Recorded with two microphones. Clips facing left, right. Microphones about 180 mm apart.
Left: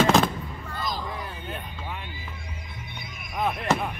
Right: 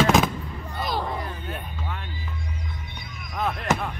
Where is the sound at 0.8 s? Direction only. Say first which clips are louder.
Right 4 dB; 65° right (ahead or behind).